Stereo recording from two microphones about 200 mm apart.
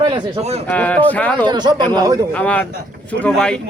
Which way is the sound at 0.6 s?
10° left (ahead or behind).